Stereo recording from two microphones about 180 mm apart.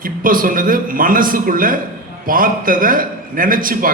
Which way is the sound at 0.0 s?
50° right (ahead or behind).